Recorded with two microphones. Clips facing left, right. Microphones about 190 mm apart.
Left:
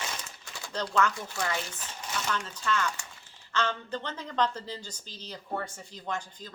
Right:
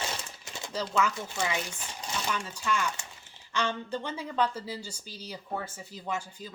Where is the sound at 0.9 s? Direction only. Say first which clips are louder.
Left 1 dB; 10° right (ahead or behind).